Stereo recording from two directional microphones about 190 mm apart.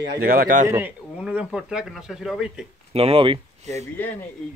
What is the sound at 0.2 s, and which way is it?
Speech, 50° right (ahead or behind).